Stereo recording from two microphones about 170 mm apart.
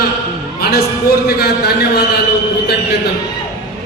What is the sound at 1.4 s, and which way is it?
Speech, 70° left (ahead or behind).